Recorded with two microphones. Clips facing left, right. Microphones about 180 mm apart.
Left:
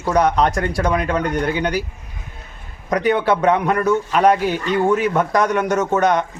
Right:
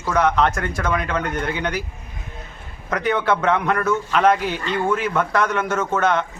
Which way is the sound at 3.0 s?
15° left (ahead or behind).